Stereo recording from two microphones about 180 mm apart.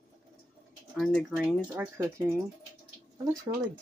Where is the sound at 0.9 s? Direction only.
5° left (ahead or behind).